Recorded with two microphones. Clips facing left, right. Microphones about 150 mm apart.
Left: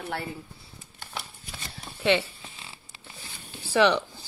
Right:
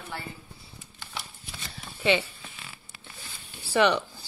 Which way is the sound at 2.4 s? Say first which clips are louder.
Even; 25° left (ahead or behind).